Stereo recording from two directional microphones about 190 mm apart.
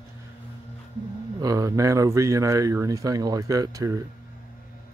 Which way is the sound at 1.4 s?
20° right (ahead or behind).